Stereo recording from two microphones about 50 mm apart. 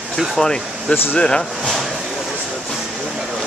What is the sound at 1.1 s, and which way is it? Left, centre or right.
Speech, centre.